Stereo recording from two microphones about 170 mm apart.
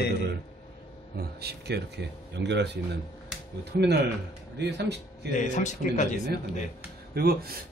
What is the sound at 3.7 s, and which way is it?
Speech, 70° right (ahead or behind).